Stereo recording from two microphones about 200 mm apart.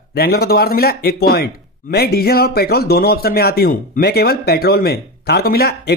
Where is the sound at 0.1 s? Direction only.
50° left (ahead or behind).